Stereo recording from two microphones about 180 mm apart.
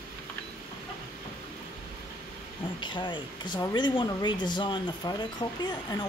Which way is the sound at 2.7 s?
25° left (ahead or behind).